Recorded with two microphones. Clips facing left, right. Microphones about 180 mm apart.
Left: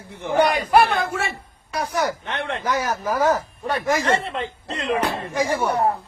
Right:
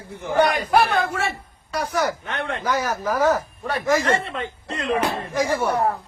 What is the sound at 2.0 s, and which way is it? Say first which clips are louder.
Speech: even; 25° left (ahead or behind).